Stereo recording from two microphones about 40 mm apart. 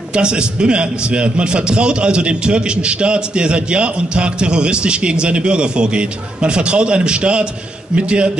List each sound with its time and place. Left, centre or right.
0.1 s a man's voice: right